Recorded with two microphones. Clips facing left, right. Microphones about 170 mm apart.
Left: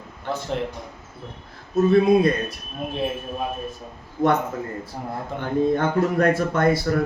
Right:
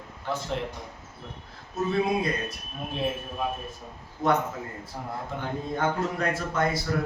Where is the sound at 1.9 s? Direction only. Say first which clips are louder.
Left 9 dB; 60° left (ahead or behind).